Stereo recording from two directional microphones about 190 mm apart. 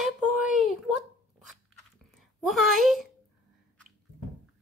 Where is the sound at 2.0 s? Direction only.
Centre (ahead or behind).